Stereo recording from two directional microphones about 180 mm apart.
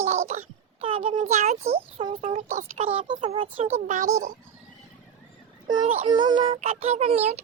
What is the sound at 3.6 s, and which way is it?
Speech, 40° right (ahead or behind).